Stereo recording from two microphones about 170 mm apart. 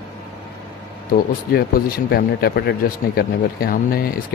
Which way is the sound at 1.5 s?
70° left (ahead or behind).